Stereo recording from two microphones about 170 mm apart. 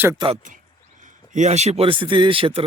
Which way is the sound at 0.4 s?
50° right (ahead or behind).